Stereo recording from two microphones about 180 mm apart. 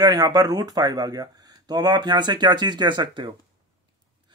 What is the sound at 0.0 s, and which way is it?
Speech, 20° right (ahead or behind).